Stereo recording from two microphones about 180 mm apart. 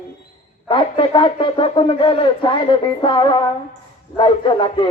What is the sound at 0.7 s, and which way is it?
Wind instrument, 25° left (ahead or behind).